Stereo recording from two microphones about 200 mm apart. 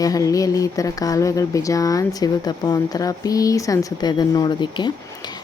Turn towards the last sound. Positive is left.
turn(degrees=20)  # may be behind; listen again after turning